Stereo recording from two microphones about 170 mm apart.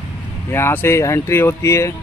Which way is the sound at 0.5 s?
15° left (ahead or behind).